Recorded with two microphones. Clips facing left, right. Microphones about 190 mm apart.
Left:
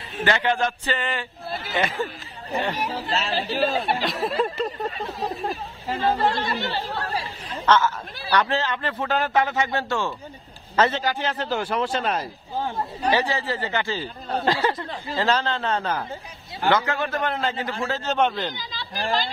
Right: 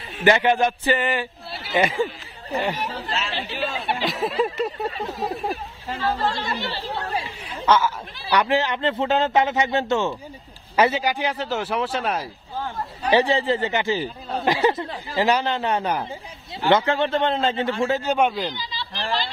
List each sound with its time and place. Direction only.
0.2 s speech: 15° right (ahead or behind)
3.1 s speech: 40° left (ahead or behind)
4.0 s a sound: centre (ahead or behind)
5.9 s speech: 20° left (ahead or behind)
6.3 s speech: 50° left (ahead or behind)
6.9 s speech: 20° right (ahead or behind)
7.4 s speech: 10° right (ahead or behind)
13.1 s speech: 25° right (ahead or behind)
16.6 s speech: 25° right (ahead or behind); by 18.5 s 5° right (ahead or behind)
18.5 s speech: 50° left (ahead or behind)